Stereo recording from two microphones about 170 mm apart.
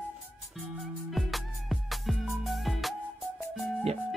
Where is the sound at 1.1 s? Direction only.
Centre (ahead or behind).